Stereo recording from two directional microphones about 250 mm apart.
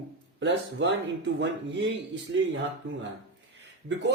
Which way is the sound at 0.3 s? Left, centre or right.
Right.